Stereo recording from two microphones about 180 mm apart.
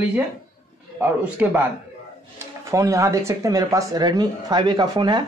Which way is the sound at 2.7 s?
15° right (ahead or behind).